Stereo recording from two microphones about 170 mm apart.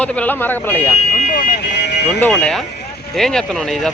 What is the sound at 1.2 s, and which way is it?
Vehicle, 55° left (ahead or behind).